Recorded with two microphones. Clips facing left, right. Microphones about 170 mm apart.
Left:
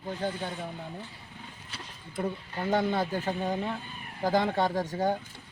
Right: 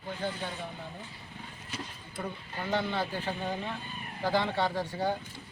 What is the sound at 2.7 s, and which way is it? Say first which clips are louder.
A woman's voice: left 4 dB; 45° left (ahead or behind).